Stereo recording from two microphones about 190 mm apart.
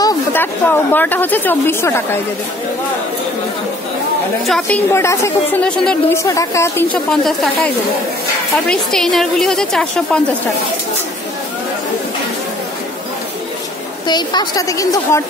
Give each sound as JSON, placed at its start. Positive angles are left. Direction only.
{"t": 0.0, "sound": "a woman's voice", "side_deg": 10}
{"t": 4.5, "sound": "a woman's voice", "side_deg": 5}
{"t": 14.0, "sound": "a woman's voice", "side_deg": 20}